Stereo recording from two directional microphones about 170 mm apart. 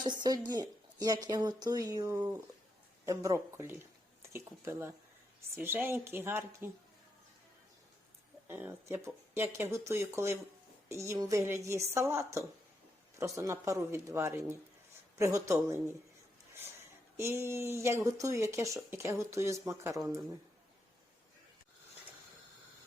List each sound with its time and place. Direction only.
0.0 s speech: 25° right (ahead or behind)
8.4 s speech: 10° right (ahead or behind)
17.2 s speech: 15° right (ahead or behind)